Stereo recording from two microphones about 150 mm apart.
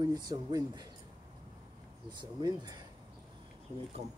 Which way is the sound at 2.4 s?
25° right (ahead or behind).